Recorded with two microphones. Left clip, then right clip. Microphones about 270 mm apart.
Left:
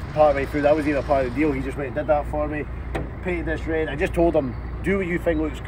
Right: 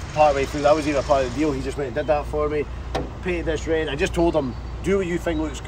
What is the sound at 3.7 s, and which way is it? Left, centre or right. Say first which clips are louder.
Speech: right 2 dB; right.